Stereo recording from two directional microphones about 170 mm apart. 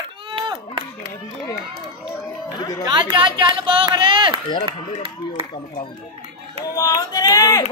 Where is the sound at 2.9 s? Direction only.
30° right (ahead or behind).